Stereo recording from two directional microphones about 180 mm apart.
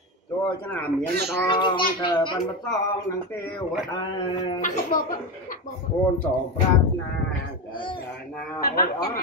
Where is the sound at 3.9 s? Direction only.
25° left (ahead or behind).